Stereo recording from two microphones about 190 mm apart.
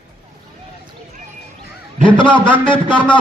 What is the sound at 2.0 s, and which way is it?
Speech, 25° left (ahead or behind).